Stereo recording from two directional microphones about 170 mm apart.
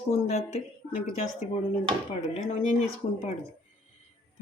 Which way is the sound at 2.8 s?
40° left (ahead or behind).